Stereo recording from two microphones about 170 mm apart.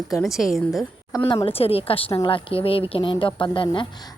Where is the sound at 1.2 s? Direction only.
30° left (ahead or behind).